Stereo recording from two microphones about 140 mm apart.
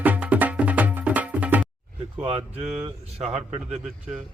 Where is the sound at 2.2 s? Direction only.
45° right (ahead or behind).